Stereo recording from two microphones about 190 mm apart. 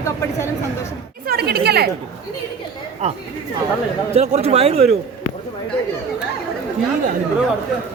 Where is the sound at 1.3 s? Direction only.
55° right (ahead or behind).